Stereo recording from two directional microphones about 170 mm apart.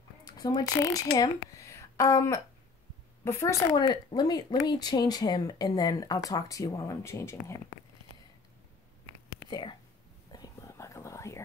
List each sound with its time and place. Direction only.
0.2 s speech: 25° left (ahead or behind)
9.5 s speech: 25° left (ahead or behind)
10.3 s whispering: 20° left (ahead or behind)